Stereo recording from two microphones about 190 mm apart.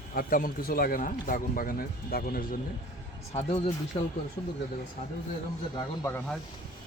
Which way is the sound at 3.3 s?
30° left (ahead or behind).